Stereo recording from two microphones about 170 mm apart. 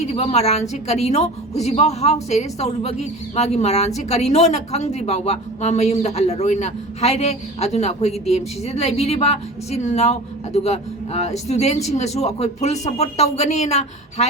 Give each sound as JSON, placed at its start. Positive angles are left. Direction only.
{"t": 0.0, "sound": "speech", "side_deg": 40}